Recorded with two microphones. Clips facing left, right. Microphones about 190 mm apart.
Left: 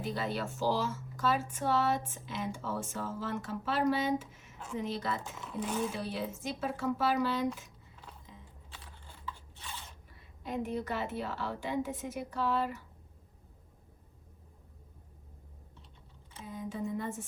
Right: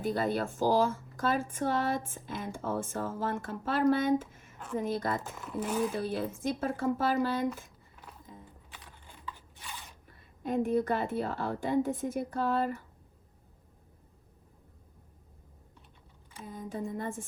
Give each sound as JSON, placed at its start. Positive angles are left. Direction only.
{"t": 0.0, "sound": "speech", "side_deg": -50}
{"t": 5.4, "sound": "speech", "side_deg": -5}
{"t": 5.9, "sound": "speech", "side_deg": -50}
{"t": 8.3, "sound": "a sound", "side_deg": -50}
{"t": 8.7, "sound": "a sound", "side_deg": -15}
{"t": 10.1, "sound": "speech", "side_deg": -50}
{"t": 16.5, "sound": "speech", "side_deg": -50}